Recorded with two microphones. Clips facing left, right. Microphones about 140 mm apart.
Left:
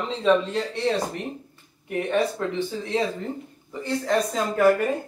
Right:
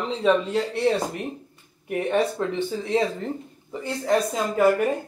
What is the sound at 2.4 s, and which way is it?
Speech, 20° right (ahead or behind).